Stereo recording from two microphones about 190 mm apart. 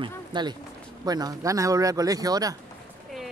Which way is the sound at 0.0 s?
25° right (ahead or behind).